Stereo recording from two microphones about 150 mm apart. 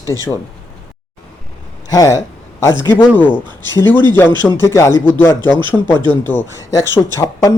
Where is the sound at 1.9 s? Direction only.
25° left (ahead or behind).